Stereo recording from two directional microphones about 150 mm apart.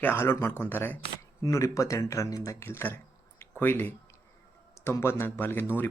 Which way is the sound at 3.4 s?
15° left (ahead or behind).